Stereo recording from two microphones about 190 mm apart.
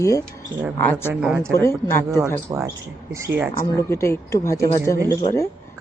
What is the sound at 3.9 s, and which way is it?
Speech, 15° left (ahead or behind).